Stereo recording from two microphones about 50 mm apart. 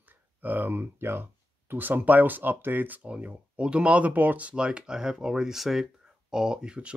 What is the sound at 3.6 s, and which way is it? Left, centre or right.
Speech, right.